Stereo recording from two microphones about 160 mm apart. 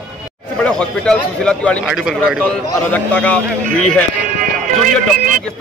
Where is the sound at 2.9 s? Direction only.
10° left (ahead or behind).